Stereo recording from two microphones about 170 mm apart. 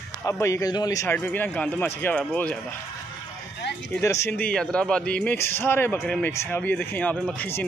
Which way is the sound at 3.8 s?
15° left (ahead or behind).